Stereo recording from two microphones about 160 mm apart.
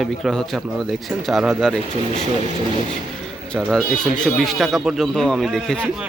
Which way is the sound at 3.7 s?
5° left (ahead or behind).